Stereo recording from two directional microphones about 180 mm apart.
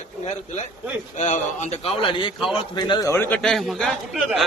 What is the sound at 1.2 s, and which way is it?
A man's voice, 40° left (ahead or behind).